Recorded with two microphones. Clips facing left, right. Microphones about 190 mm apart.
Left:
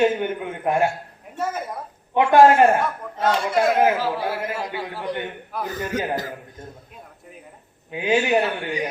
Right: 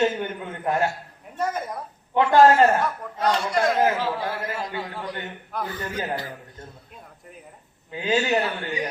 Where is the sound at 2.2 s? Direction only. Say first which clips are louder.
Left 2 dB; 15° left (ahead or behind).